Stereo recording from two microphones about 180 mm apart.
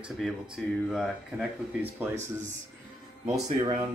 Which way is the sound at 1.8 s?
10° right (ahead or behind).